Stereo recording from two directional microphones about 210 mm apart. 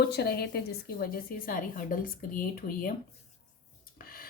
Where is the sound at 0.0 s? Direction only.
50° left (ahead or behind).